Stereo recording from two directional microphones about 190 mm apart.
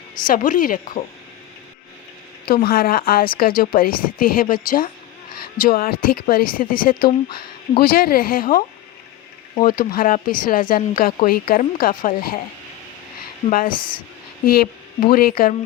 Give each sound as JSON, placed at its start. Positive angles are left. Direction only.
{"t": 0.3, "sound": "speech", "side_deg": 45}
{"t": 2.5, "sound": "speech", "side_deg": 55}
{"t": 9.6, "sound": "speech", "side_deg": 50}
{"t": 13.5, "sound": "speech", "side_deg": 50}